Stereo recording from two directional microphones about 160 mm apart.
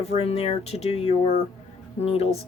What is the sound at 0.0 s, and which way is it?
Speech, 40° left (ahead or behind).